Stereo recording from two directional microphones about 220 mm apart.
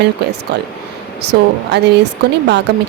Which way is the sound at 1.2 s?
50° right (ahead or behind).